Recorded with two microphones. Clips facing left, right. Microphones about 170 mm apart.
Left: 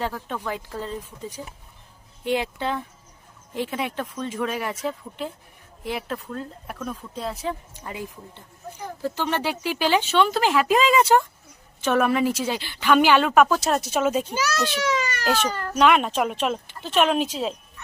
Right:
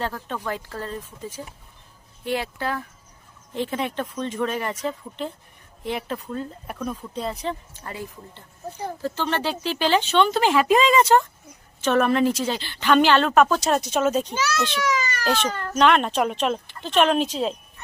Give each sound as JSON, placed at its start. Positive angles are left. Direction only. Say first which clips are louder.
{"t": 0.0, "sound": "a woman's voice", "louder": "even", "side_deg": 10}
{"t": 3.5, "sound": "a woman's voice", "louder": "right 1 dB", "side_deg": 10}
{"t": 7.9, "sound": "a woman's voice", "louder": "even", "side_deg": 15}
{"t": 14.8, "sound": "police car", "louder": "even", "side_deg": 30}
{"t": 15.3, "sound": "a woman's voice", "louder": "even", "side_deg": 10}